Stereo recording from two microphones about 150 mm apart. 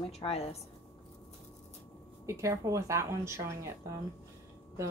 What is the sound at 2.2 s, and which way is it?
A woman's voice, 20° right (ahead or behind).